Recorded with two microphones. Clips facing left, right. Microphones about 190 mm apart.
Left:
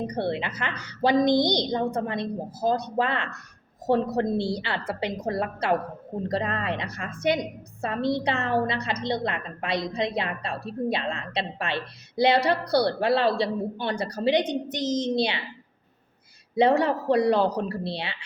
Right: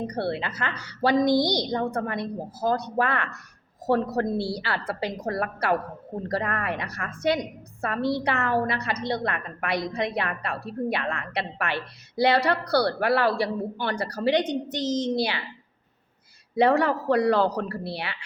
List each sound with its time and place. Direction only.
0.1 s a woman's voice: 20° left (ahead or behind)
16.6 s a woman's voice: 20° left (ahead or behind)